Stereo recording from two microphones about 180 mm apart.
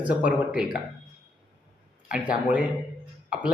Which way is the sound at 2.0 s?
5° right (ahead or behind).